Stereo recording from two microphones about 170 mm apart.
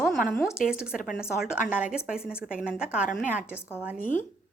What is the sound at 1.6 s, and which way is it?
Speech, 50° left (ahead or behind).